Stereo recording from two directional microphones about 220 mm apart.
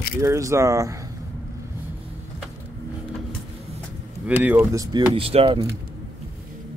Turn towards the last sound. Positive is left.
turn(degrees=-25)  # may be behind; listen again after turning